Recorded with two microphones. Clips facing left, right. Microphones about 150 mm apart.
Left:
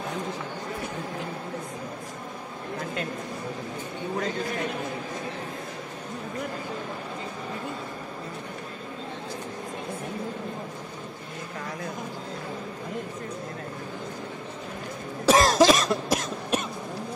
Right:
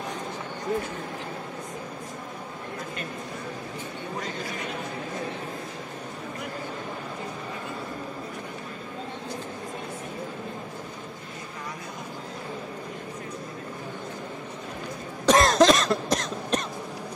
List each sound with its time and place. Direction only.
15.2 s cough: centre (ahead or behind)